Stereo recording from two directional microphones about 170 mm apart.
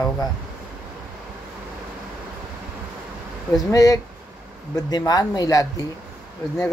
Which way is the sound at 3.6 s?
20° left (ahead or behind).